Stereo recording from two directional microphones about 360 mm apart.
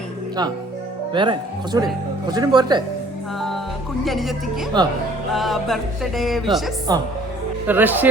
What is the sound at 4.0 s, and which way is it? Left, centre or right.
Music, centre.